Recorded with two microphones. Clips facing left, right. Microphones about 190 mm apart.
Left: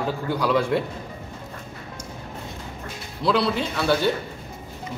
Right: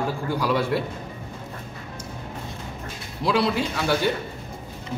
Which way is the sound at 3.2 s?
10° right (ahead or behind).